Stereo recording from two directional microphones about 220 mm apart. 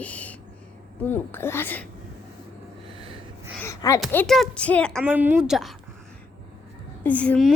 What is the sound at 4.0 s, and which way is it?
A woman's voice, centre (ahead or behind).